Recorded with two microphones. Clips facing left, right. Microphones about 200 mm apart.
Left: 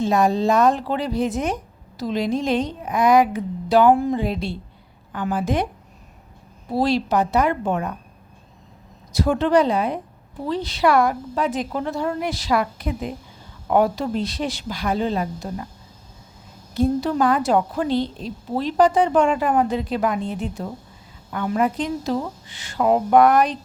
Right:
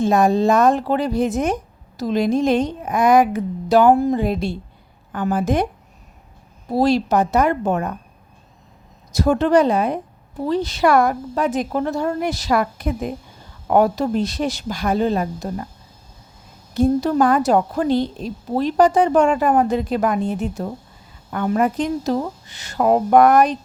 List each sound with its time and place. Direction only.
0.0 s a woman's voice: 50° right (ahead or behind)
6.7 s a woman's voice: 45° right (ahead or behind)
9.1 s a woman's voice: 45° right (ahead or behind)
16.7 s a woman's voice: 45° right (ahead or behind)